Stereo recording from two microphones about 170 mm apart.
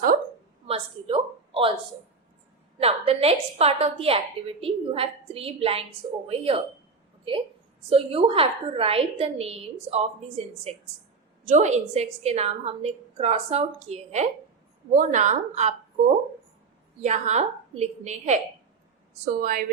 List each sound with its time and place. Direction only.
0.7 s speech: 35° right (ahead or behind)
2.8 s a woman's voice: 35° right (ahead or behind)
17.0 s a woman's voice: 45° right (ahead or behind)
19.2 s speech: 55° right (ahead or behind)